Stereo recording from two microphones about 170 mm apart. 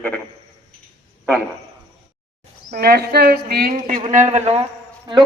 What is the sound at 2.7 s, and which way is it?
Speech, 65° right (ahead or behind).